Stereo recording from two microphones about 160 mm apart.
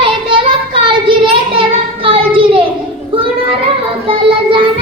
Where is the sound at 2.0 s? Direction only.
35° right (ahead or behind).